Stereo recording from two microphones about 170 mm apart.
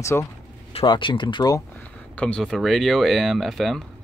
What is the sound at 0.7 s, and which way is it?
Speech, 30° left (ahead or behind).